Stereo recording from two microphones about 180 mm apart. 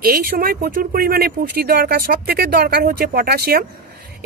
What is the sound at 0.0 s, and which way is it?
Speech, 50° right (ahead or behind).